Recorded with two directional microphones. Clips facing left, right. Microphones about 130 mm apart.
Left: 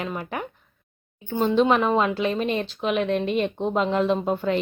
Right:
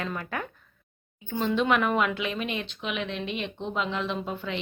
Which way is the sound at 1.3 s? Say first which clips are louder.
Left 5 dB; 35° left (ahead or behind).